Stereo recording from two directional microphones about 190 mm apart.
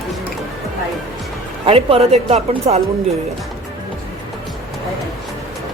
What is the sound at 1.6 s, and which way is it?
A woman's voice, 30° right (ahead or behind).